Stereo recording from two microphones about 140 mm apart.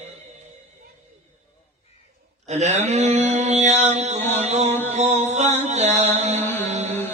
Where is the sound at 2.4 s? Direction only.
55° right (ahead or behind).